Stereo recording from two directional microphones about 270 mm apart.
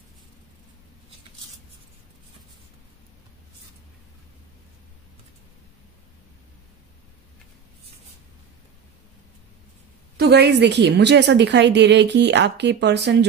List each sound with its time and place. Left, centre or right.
10.1 s a woman's voice: right